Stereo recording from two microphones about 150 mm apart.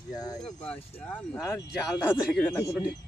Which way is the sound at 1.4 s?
5° right (ahead or behind).